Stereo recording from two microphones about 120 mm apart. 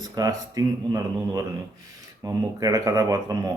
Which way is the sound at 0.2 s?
30° right (ahead or behind).